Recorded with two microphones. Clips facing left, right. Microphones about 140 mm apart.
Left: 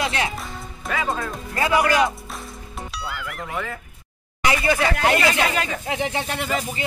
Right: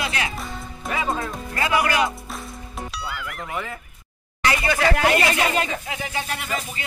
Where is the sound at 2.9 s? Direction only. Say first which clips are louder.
Left 3 dB; centre (ahead or behind).